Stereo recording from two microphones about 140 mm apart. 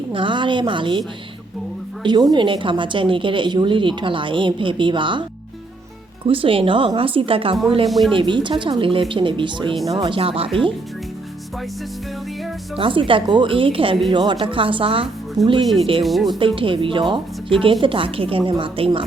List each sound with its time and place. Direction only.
0.1 s a woman's voice: 35° right (ahead or behind)
2.0 s a woman's voice: 30° right (ahead or behind)
6.2 s a woman's voice: 40° right (ahead or behind)
7.9 s speech: centre (ahead or behind)
8.1 s a woman's voice: 35° right (ahead or behind)
12.7 s a woman's voice: 40° right (ahead or behind)
15.4 s speech: centre (ahead or behind)
15.8 s a woman's voice: 40° right (ahead or behind)
16.0 s speech: centre (ahead or behind)
16.6 s a woman's voice: 40° right (ahead or behind)